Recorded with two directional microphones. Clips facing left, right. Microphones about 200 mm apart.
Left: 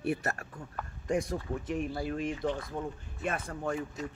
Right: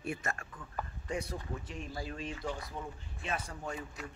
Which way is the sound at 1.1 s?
45° left (ahead or behind).